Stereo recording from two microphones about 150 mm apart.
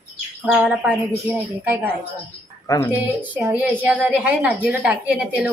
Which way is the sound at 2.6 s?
15° left (ahead or behind).